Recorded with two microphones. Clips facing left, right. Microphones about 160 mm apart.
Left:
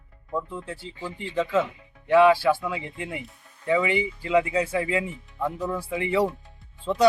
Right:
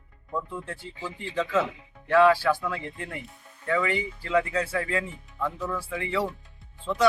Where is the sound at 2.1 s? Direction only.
15° left (ahead or behind).